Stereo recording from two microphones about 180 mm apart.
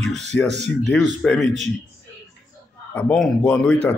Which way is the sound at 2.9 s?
5° left (ahead or behind).